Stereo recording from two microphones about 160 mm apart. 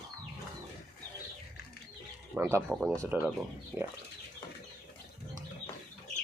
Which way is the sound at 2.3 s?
10° right (ahead or behind).